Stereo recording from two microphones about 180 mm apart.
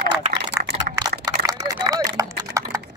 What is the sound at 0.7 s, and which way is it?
Typing, 50° right (ahead or behind).